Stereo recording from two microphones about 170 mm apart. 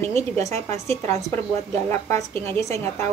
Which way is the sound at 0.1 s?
20° left (ahead or behind).